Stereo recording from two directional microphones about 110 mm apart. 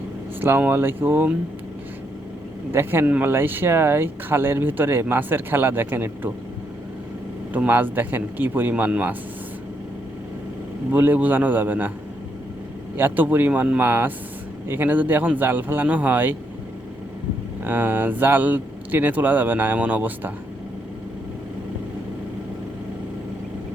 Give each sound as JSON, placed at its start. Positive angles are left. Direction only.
{"t": 0.4, "sound": "speech", "side_deg": -20}
{"t": 2.7, "sound": "speech", "side_deg": -20}
{"t": 7.5, "sound": "speech", "side_deg": -15}
{"t": 10.9, "sound": "speech", "side_deg": -15}
{"t": 13.0, "sound": "speech", "side_deg": -15}
{"t": 17.6, "sound": "speech", "side_deg": -20}